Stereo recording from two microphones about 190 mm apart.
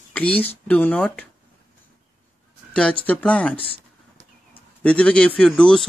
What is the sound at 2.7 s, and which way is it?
Speech, 5° left (ahead or behind).